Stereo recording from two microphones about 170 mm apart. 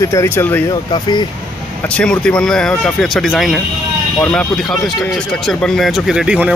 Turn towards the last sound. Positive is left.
turn(degrees=-5)  # may be behind; listen again after turning